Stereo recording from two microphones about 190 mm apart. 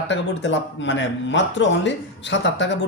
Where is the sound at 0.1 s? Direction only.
70° left (ahead or behind).